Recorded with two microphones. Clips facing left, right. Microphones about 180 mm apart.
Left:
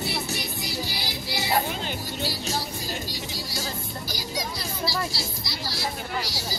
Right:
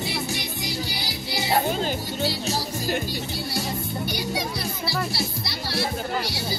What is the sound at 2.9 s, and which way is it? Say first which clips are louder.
Music: right 6 dB; 60° right (ahead or behind).